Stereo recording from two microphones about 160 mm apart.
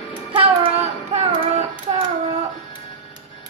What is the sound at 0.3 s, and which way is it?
Child singing, 40° right (ahead or behind).